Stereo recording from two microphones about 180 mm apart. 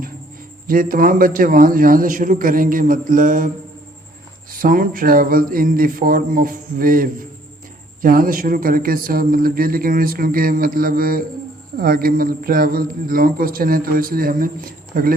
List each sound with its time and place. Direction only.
0.7 s a man's voice: 50° right (ahead or behind)
4.5 s a man's voice: 50° right (ahead or behind)